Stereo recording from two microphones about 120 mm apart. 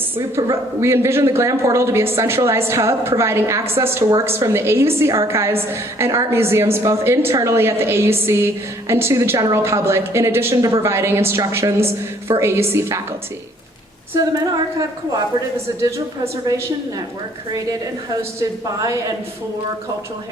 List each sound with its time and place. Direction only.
0.2 s a man's voice: 25° right (ahead or behind)
14.2 s a man's voice: 30° right (ahead or behind)
18.8 s a man's voice: 25° right (ahead or behind)